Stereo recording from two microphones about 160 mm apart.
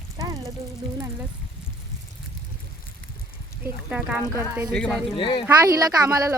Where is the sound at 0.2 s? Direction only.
20° right (ahead or behind).